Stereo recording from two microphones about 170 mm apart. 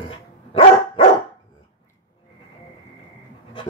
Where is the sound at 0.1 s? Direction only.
35° left (ahead or behind).